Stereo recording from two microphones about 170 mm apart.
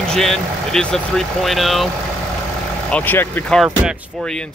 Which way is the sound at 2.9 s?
10° left (ahead or behind).